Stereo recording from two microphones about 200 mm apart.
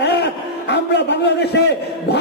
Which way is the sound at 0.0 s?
60° left (ahead or behind).